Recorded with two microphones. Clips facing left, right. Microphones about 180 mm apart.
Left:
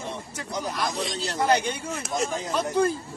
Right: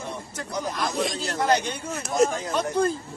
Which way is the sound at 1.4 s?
10° left (ahead or behind).